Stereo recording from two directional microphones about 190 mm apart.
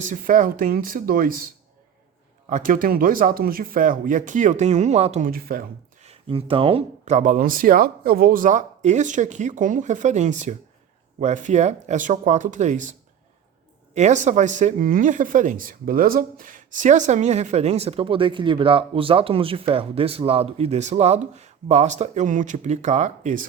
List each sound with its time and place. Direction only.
0.0 s speech: 45° right (ahead or behind)
2.5 s speech: 45° right (ahead or behind)
6.0 s speech: 30° right (ahead or behind)